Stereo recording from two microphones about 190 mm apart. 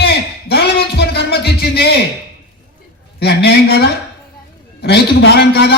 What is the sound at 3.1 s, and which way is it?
A man's voice, 60° left (ahead or behind).